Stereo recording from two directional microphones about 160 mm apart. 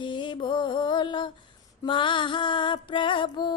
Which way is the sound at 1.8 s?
30° left (ahead or behind).